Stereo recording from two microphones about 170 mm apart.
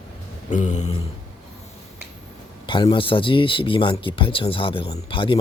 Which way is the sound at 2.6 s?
30° left (ahead or behind).